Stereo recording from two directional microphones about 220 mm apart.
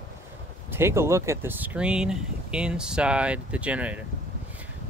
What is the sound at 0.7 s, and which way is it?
Speech, 10° right (ahead or behind).